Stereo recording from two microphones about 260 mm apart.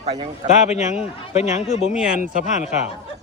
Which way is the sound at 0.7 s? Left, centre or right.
Left.